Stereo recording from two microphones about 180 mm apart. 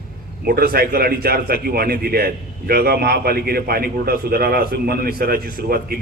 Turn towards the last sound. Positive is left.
turn(degrees=-55)  # may be behind; listen again after turning